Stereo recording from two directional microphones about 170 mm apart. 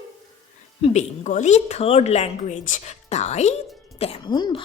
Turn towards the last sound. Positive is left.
turn(degrees=25)  # may be behind; listen again after turning